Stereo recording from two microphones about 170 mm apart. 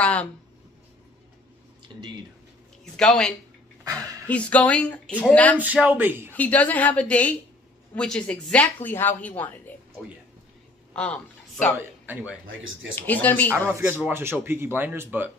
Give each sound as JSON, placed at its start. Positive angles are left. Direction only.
{"t": 0.0, "sound": "speech", "side_deg": 5}
{"t": 2.8, "sound": "speech", "side_deg": 0}
{"t": 3.8, "sound": "speech", "side_deg": -20}
{"t": 4.3, "sound": "speech", "side_deg": 10}
{"t": 5.6, "sound": "speech", "side_deg": -10}
{"t": 6.3, "sound": "speech", "side_deg": 10}
{"t": 10.9, "sound": "a sound", "side_deg": 5}
{"t": 12.1, "sound": "speech", "side_deg": -10}
{"t": 12.9, "sound": "speech", "side_deg": 10}
{"t": 13.5, "sound": "speech", "side_deg": -15}